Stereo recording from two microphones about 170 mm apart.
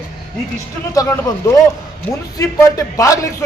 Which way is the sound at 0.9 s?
20° left (ahead or behind).